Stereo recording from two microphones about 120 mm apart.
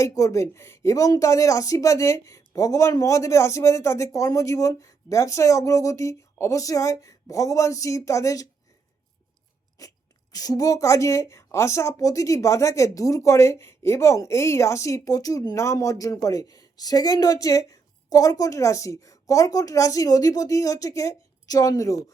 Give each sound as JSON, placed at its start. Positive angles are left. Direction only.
{"t": 0.0, "sound": "speech", "side_deg": 25}
{"t": 9.8, "sound": "crunch", "side_deg": 30}
{"t": 10.3, "sound": "speech", "side_deg": 30}